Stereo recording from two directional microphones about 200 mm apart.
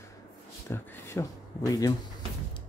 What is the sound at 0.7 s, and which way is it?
A man's voice, 10° left (ahead or behind).